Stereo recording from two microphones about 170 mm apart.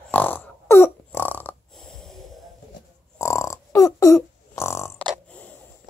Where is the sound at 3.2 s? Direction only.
15° left (ahead or behind).